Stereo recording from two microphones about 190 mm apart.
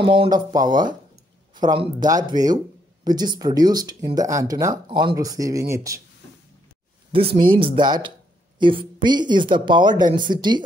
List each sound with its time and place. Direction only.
0.0 s speech: 25° right (ahead or behind)
7.3 s speech: 25° right (ahead or behind)